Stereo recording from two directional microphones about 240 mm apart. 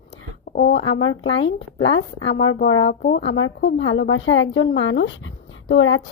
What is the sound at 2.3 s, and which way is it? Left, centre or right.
Speech, left.